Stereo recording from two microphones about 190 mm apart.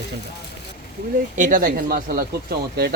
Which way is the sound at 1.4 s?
45° right (ahead or behind).